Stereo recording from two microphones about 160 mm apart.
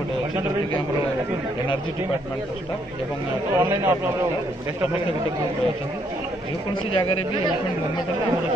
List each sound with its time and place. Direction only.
3.5 s speech: 15° right (ahead or behind)
6.7 s speech: 35° left (ahead or behind)